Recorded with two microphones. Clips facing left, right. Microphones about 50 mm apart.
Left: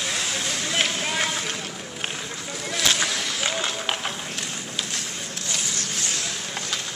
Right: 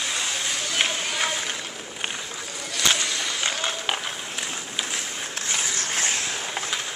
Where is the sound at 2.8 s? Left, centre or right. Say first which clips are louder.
Even; centre.